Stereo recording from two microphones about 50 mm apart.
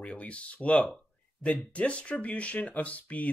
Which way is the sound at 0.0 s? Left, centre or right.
Left.